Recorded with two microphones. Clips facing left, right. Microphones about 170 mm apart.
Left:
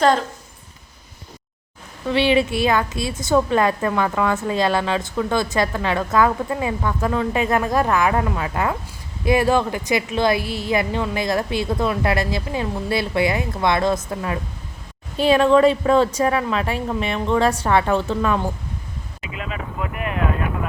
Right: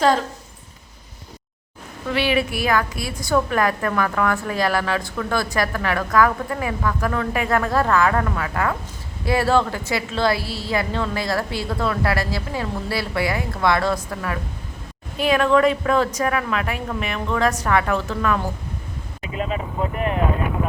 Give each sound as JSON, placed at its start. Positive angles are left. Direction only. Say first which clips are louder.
{"t": 2.0, "sound": "a woman's voice", "louder": "left 3 dB", "side_deg": 25}
{"t": 19.2, "sound": "speech", "louder": "right 5 dB", "side_deg": -40}